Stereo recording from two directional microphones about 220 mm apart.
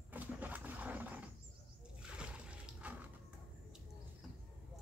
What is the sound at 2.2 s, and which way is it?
Music, 5° right (ahead or behind).